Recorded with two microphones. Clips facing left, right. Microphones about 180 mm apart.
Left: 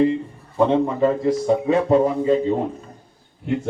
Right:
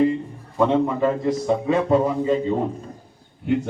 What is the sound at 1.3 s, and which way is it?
A man's voice, 30° left (ahead or behind).